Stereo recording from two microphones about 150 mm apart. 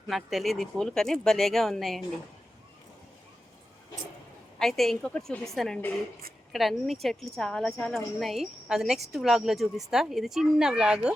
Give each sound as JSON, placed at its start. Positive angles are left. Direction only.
{"t": 0.1, "sound": "a woman's voice", "side_deg": 0}
{"t": 4.6, "sound": "a woman's voice", "side_deg": 0}